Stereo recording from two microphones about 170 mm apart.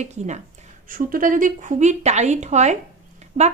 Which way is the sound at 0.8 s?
55° right (ahead or behind).